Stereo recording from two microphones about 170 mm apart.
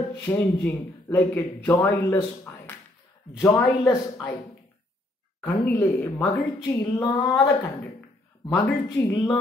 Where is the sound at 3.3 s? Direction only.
15° left (ahead or behind).